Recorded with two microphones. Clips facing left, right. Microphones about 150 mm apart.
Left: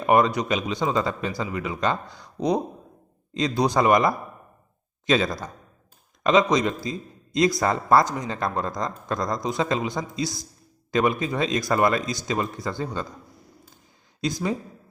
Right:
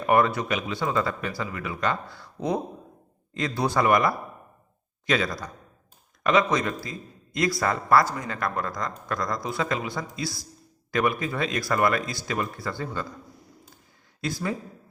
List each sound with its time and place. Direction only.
0.0 s speech: 20° left (ahead or behind)
14.2 s speech: 20° left (ahead or behind)